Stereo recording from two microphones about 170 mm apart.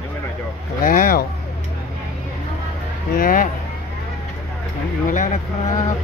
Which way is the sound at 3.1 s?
55° left (ahead or behind).